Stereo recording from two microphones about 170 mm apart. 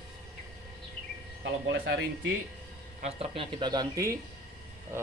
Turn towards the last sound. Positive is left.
turn(degrees=-20)  # may be behind; listen again after turning